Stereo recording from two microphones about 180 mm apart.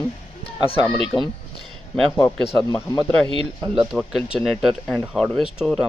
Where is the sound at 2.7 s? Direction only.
20° left (ahead or behind).